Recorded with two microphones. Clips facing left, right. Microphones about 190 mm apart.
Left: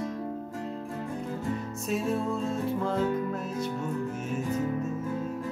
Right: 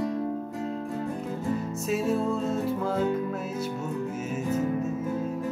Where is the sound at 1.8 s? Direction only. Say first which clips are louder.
Right 2 dB; centre (ahead or behind).